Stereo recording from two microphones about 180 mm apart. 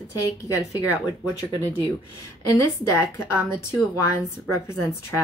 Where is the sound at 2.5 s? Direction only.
15° left (ahead or behind).